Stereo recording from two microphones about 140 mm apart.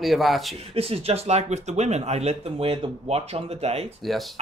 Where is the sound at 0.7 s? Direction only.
45° right (ahead or behind).